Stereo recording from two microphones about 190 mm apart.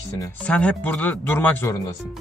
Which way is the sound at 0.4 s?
5° left (ahead or behind).